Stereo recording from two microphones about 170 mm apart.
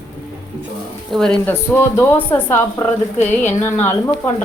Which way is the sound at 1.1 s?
5° left (ahead or behind).